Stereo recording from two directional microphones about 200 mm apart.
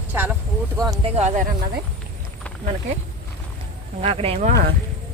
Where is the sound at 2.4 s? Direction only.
5° left (ahead or behind).